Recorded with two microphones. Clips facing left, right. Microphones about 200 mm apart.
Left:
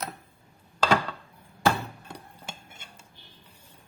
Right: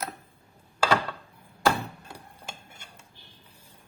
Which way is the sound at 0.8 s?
10° right (ahead or behind).